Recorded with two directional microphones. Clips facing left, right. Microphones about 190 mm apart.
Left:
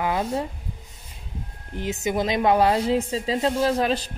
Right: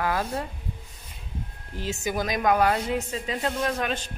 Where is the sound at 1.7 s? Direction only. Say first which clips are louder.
Left 4 dB; 20° left (ahead or behind).